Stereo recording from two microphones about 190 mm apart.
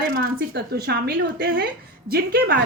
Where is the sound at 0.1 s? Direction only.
50° right (ahead or behind).